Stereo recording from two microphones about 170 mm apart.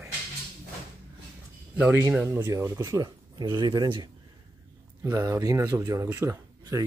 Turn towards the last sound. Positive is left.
turn(degrees=-15)  # may be behind; listen again after turning